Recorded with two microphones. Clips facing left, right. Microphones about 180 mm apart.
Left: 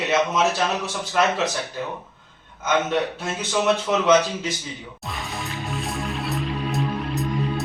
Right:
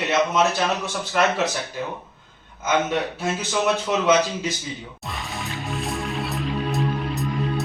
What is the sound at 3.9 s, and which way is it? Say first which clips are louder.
Speech: left 1 dB; centre (ahead or behind).